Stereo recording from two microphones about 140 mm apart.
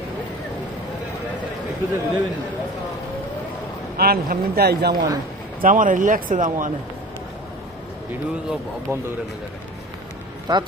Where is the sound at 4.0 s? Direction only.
90° right.